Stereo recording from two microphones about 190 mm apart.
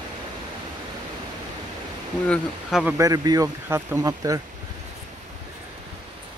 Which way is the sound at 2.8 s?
15° right (ahead or behind).